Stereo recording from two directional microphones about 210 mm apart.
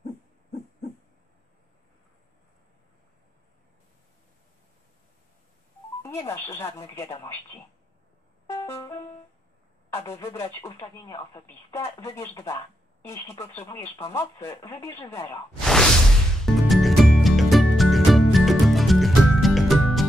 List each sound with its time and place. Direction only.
6.0 s speech: 10° left (ahead or behind)
8.5 s music: 15° left (ahead or behind)
9.9 s speech: 15° left (ahead or behind)
13.7 s speech: 15° left (ahead or behind)
15.6 s whoosh: centre (ahead or behind)
16.4 s music: centre (ahead or behind)